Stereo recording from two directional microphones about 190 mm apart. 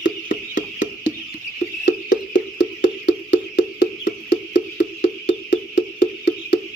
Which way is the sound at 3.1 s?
65° left (ahead or behind).